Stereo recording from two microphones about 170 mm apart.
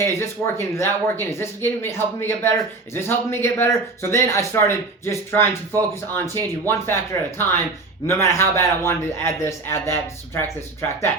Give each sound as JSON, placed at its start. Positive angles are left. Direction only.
{"t": 0.0, "sound": "speech", "side_deg": 15}